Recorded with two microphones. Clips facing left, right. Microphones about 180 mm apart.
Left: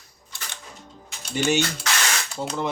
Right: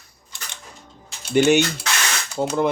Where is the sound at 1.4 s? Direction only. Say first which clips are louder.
Right 7 dB; 60° right (ahead or behind).